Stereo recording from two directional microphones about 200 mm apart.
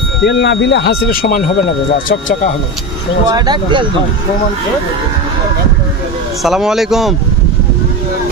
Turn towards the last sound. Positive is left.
turn(degrees=0)  # may be behind; listen again after turning